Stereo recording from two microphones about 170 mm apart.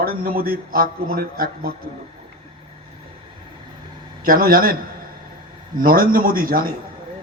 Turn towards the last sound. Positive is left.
turn(degrees=-60)  # may be behind; listen again after turning